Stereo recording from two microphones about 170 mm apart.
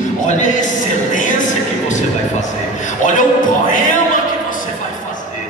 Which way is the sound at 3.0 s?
50° left (ahead or behind).